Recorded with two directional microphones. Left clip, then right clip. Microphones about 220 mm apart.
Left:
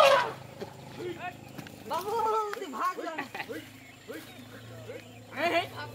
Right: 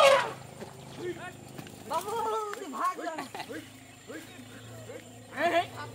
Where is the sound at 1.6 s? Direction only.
40° left (ahead or behind).